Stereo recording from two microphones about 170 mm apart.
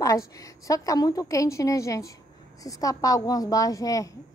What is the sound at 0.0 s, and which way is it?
A woman's voice, 20° left (ahead or behind).